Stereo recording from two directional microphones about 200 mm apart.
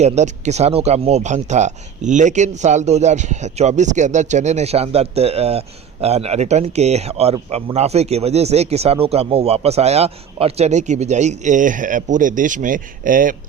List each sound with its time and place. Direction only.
0.0 s speech: 35° right (ahead or behind)